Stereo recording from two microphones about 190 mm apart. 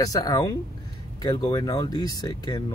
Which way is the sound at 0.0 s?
20° left (ahead or behind).